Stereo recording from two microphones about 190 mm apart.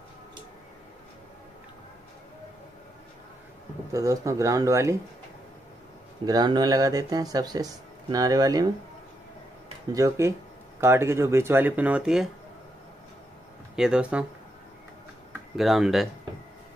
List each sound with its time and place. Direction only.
3.9 s speech: 15° right (ahead or behind)
6.2 s speech: 20° right (ahead or behind)
9.9 s speech: 15° right (ahead or behind)
13.7 s speech: 5° right (ahead or behind)
15.5 s speech: centre (ahead or behind)